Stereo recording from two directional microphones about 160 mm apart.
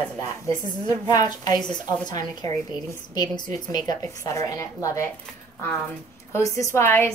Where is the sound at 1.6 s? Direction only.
5° left (ahead or behind).